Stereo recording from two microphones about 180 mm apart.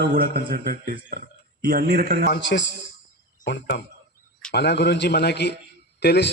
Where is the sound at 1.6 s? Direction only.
65° right (ahead or behind).